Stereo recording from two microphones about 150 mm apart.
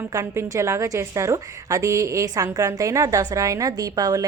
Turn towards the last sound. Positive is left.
turn(degrees=-25)  # may be behind; listen again after turning